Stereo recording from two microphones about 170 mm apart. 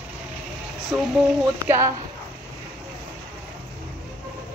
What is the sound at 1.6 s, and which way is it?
Speech, 15° right (ahead or behind).